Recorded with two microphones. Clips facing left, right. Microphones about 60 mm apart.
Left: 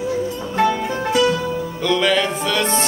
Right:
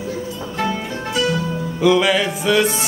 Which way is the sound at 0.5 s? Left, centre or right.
Left.